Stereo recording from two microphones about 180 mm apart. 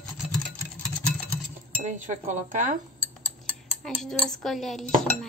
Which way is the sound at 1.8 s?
45° right (ahead or behind).